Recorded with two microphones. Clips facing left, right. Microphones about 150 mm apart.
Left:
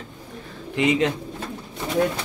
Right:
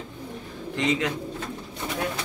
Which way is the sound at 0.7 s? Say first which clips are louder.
Left 4 dB; 10° left (ahead or behind).